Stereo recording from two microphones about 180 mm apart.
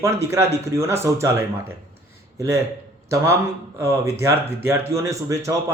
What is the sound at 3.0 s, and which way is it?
A man's voice, 15° right (ahead or behind).